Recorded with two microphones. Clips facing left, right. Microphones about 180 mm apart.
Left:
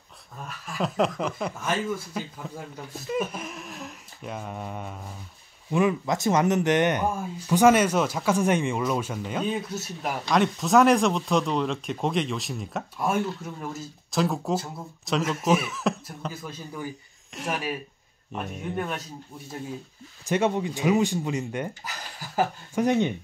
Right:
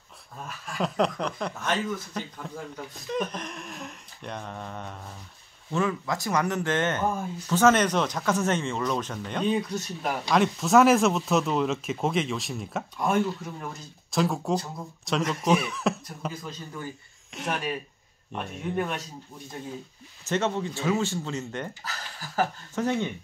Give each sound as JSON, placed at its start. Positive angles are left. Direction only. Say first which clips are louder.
{"t": 0.7, "sound": "speech", "louder": "left 1 dB", "side_deg": 0}
{"t": 20.2, "sound": "speech", "louder": "left 3 dB", "side_deg": 10}